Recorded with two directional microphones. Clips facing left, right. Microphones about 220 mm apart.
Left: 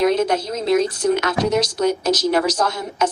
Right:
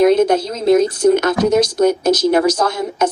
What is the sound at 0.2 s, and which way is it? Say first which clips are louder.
Speech: right 5 dB; 50° right (ahead or behind).